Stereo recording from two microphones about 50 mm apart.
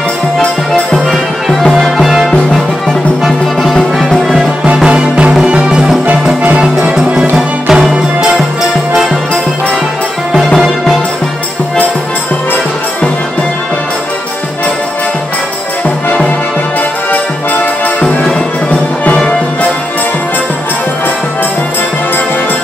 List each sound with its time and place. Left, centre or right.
1.7 s music: centre
3.3 s music: centre
4.8 s music: centre
7.3 s music: centre